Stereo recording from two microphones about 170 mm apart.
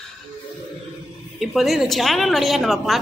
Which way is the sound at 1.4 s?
Centre (ahead or behind).